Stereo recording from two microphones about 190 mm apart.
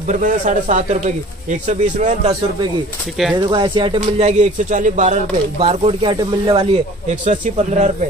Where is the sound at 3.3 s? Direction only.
25° right (ahead or behind); by 5.7 s 40° right (ahead or behind).